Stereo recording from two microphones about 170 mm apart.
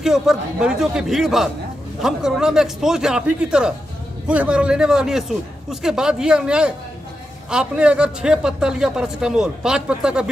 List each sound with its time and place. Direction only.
0.0 s a man's voice: 5° right (ahead or behind)